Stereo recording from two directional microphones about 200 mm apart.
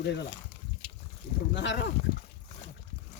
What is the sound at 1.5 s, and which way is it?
Speech, 60° left (ahead or behind).